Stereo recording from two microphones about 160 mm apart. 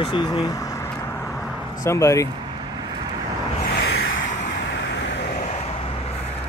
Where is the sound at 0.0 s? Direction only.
30° left (ahead or behind).